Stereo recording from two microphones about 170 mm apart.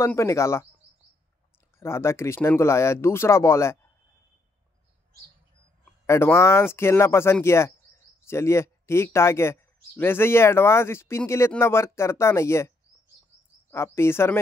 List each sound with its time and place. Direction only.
0.0 s speech: 15° left (ahead or behind)
1.8 s speech: 15° left (ahead or behind)
6.0 s speech: 15° left (ahead or behind)